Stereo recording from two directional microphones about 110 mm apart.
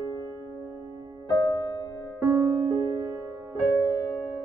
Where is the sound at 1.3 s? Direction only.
35° left (ahead or behind).